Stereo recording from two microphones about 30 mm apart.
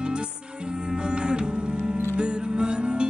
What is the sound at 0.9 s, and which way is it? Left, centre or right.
Music, right.